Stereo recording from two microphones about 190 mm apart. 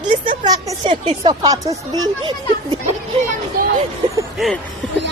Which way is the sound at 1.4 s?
20° right (ahead or behind).